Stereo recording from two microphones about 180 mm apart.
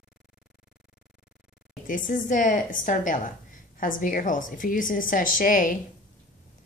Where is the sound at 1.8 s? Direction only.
50° left (ahead or behind).